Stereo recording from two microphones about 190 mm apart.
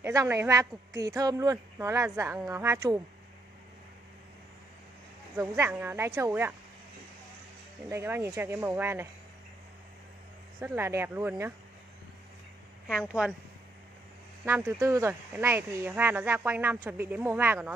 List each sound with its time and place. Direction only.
0.0 s speech: 15° right (ahead or behind)
5.3 s speech: 10° right (ahead or behind)
7.9 s speech: 15° right (ahead or behind)
10.6 s speech: 10° right (ahead or behind)
12.8 s a woman's voice: centre (ahead or behind)
14.4 s speech: 10° right (ahead or behind)